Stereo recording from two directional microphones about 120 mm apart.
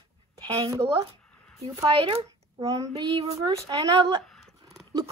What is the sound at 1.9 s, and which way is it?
Speech, 50° right (ahead or behind).